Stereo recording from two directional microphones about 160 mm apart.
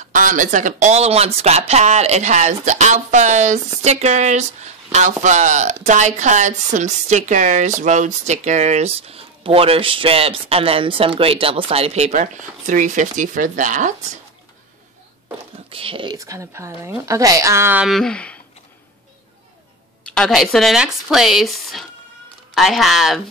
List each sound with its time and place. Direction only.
0.0 s speech: 55° right (ahead or behind)
15.7 s speech: 35° right (ahead or behind); by 17.8 s 15° right (ahead or behind)
17.8 s speech: centre (ahead or behind)
20.1 s speech: 5° left (ahead or behind)